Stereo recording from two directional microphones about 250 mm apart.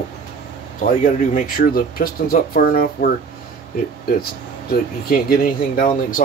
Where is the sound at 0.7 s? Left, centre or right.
Left.